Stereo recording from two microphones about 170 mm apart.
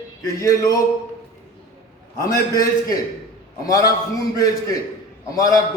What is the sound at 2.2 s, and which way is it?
A man's voice, 20° left (ahead or behind).